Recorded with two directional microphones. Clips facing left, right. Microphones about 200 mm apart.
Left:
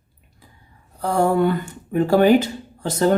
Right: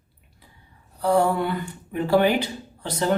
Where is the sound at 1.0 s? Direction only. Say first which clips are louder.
Left 2 dB; 45° left (ahead or behind).